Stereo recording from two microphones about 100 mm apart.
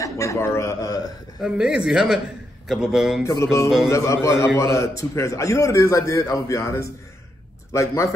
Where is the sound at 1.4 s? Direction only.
10° right (ahead or behind).